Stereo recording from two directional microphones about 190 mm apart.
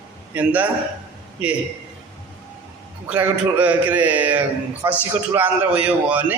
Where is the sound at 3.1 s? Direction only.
10° right (ahead or behind).